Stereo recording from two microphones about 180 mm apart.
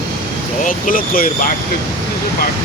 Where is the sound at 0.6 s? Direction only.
50° left (ahead or behind).